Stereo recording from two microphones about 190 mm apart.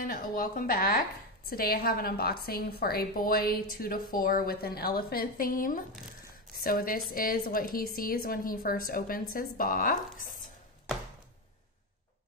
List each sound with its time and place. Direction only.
0.0 s a woman's voice: 45° left (ahead or behind)